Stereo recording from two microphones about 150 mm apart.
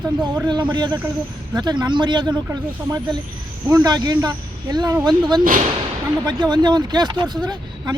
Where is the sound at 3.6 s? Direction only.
25° right (ahead or behind).